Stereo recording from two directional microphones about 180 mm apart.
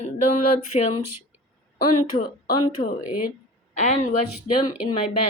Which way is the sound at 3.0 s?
10° right (ahead or behind).